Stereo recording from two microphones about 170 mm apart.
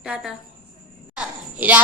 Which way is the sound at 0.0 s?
Centre (ahead or behind).